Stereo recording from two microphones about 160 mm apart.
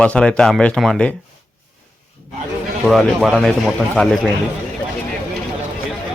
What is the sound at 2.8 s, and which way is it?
Speech, centre (ahead or behind).